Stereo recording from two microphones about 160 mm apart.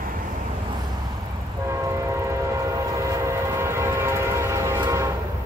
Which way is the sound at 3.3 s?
15° right (ahead or behind).